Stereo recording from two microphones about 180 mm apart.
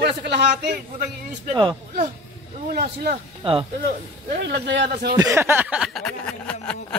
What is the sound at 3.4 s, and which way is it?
Speech, 30° right (ahead or behind).